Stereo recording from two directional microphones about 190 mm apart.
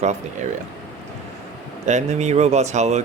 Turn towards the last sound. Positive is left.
turn(degrees=-35)  # may be behind; listen again after turning